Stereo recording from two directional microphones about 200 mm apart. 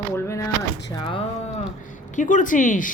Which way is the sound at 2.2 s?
40° left (ahead or behind).